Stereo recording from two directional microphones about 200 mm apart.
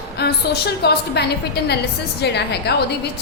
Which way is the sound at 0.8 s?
55° left (ahead or behind).